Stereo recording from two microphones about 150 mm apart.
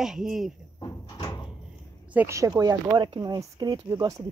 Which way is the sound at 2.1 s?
15° right (ahead or behind).